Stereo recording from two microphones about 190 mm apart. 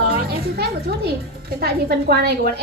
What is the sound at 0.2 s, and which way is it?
Music, 55° right (ahead or behind).